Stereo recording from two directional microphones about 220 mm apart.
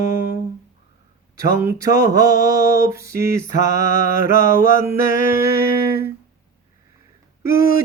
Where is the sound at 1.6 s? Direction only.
15° right (ahead or behind).